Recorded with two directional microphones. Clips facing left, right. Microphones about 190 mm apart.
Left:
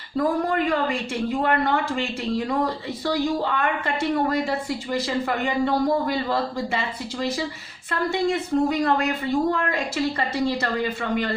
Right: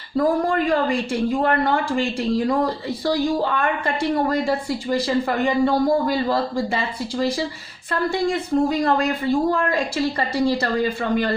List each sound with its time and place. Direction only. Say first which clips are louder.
0.2 s speech: right 3 dB; 35° right (ahead or behind)